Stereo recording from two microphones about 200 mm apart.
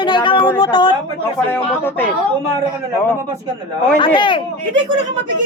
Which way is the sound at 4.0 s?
25° left (ahead or behind).